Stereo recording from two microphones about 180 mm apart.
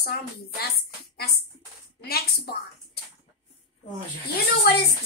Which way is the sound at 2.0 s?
60° left (ahead or behind).